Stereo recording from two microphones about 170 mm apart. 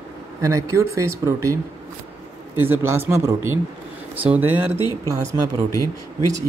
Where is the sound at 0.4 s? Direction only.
20° right (ahead or behind).